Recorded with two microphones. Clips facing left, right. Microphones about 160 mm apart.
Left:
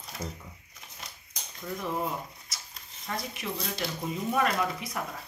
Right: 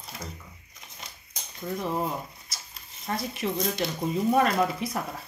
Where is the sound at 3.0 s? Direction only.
35° right (ahead or behind).